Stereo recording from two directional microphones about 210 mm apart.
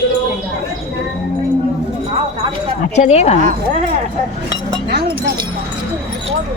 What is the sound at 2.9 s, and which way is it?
Speech, 30° left (ahead or behind).